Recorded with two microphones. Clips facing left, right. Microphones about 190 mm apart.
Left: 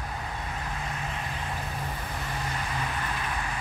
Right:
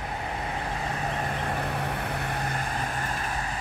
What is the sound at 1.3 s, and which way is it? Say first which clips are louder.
Vehicle: right 5 dB; 60° right (ahead or behind).